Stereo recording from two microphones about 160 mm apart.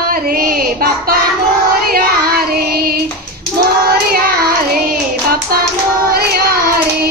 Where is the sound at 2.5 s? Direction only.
75° right (ahead or behind).